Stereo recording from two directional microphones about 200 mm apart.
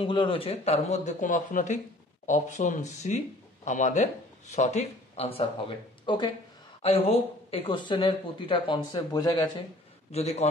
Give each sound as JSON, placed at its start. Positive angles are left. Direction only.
{"t": 0.0, "sound": "speech", "side_deg": 25}
{"t": 10.1, "sound": "speech", "side_deg": 35}